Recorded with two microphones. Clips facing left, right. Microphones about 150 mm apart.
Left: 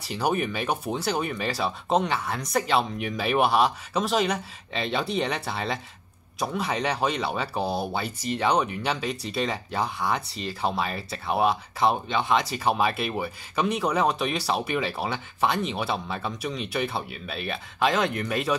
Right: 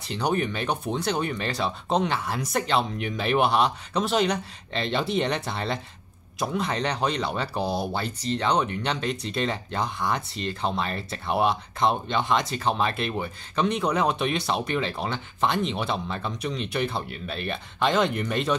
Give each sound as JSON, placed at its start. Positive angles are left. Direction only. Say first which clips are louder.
{"t": 0.0, "sound": "speech", "louder": "even", "side_deg": 5}